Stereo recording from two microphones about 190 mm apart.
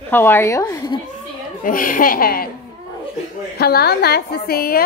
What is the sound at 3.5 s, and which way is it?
A woman's voice, 55° left (ahead or behind).